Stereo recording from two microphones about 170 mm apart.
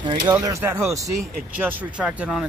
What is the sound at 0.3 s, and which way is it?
Speech, 15° right (ahead or behind).